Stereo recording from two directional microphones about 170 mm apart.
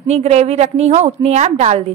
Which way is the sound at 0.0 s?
40° right (ahead or behind).